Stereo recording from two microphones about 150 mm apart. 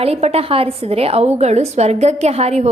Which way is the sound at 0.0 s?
45° right (ahead or behind).